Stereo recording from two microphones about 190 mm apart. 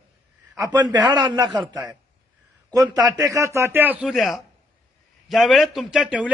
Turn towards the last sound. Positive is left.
turn(degrees=-5)  # may be behind; listen again after turning